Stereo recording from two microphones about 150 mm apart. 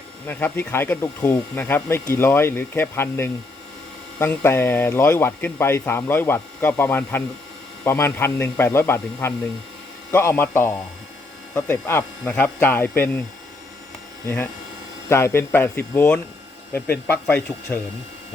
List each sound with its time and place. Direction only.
0.3 s speech: 10° left (ahead or behind)
14.3 s speech: 15° left (ahead or behind)